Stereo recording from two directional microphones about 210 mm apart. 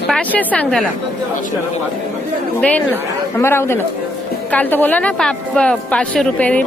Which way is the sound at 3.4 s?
10° left (ahead or behind).